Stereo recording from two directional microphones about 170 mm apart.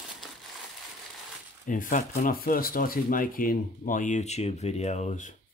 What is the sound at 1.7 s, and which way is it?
Speech, 50° left (ahead or behind).